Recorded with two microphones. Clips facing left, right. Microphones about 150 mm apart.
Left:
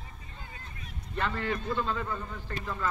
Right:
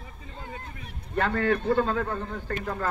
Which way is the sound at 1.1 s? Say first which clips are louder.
Right 7 dB; 55° right (ahead or behind).